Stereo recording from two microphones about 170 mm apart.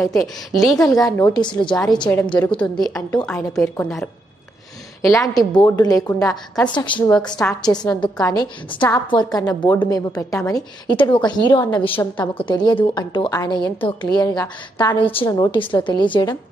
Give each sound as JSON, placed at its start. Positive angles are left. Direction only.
{"t": 0.0, "sound": "a woman's voice", "side_deg": 0}
{"t": 1.0, "sound": "a woman's voice", "side_deg": 20}
{"t": 1.5, "sound": "a woman's voice", "side_deg": 5}
{"t": 5.0, "sound": "a woman's voice", "side_deg": 20}